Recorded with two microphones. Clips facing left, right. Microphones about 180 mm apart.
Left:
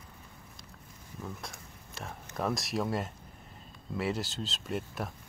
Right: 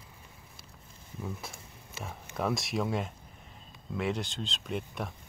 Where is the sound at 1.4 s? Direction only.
5° right (ahead or behind).